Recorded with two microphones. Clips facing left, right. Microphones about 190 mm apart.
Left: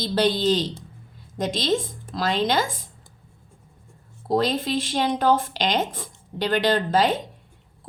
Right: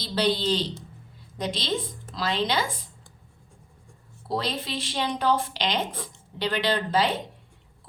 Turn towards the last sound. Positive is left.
turn(degrees=45)  # may be behind; listen again after turning